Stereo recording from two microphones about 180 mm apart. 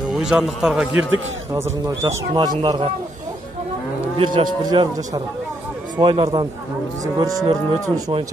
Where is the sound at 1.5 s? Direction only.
15° right (ahead or behind).